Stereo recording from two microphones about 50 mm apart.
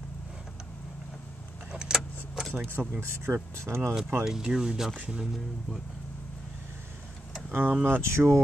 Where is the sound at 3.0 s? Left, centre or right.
Right.